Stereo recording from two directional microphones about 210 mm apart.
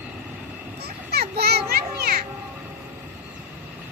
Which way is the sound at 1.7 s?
45° right (ahead or behind).